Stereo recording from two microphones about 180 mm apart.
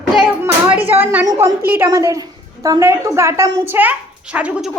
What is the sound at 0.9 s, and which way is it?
A woman's voice, 10° right (ahead or behind).